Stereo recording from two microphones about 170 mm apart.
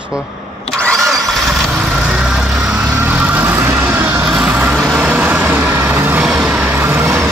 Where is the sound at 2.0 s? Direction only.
5° right (ahead or behind).